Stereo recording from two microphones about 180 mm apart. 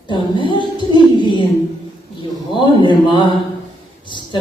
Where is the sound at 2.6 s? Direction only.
25° left (ahead or behind).